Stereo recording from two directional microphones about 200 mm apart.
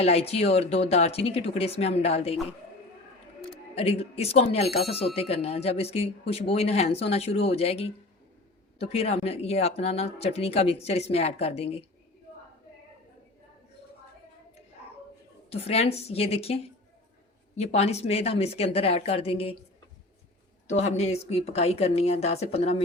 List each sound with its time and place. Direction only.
0.0 s speech: 30° left (ahead or behind)
3.8 s speech: 30° left (ahead or behind)
15.4 s a woman's voice: 30° left (ahead or behind)
17.7 s speech: 30° left (ahead or behind)
20.7 s speech: 35° left (ahead or behind)